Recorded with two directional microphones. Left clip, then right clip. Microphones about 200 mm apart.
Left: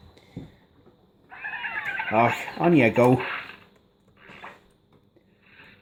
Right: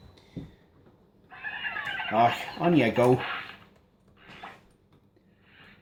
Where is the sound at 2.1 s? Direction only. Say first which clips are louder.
Left 1 dB; 50° left (ahead or behind).